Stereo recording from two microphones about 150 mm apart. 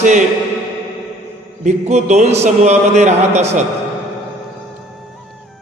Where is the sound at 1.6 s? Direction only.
50° right (ahead or behind).